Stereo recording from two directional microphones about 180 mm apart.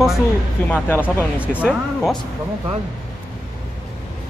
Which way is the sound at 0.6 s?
10° left (ahead or behind).